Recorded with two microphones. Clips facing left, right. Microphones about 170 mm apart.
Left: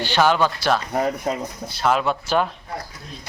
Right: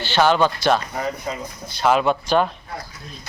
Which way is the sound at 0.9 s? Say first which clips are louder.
Left 4 dB; 50° left (ahead or behind).